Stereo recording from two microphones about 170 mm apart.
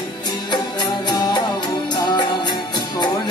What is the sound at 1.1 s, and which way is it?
Music, 25° left (ahead or behind).